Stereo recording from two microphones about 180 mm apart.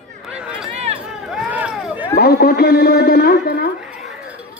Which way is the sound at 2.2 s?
60° left (ahead or behind).